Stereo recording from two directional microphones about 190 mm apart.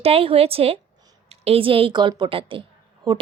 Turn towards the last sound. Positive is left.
turn(degrees=-25)  # may be behind; listen again after turning